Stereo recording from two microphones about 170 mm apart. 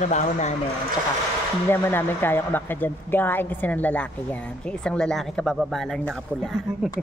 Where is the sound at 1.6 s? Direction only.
10° left (ahead or behind).